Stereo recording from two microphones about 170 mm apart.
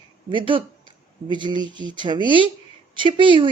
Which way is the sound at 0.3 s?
30° right (ahead or behind).